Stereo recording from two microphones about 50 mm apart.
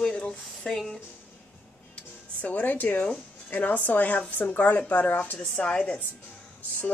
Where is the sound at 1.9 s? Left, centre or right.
Left.